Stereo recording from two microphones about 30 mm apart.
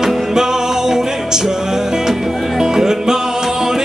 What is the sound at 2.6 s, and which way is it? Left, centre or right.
Music, centre.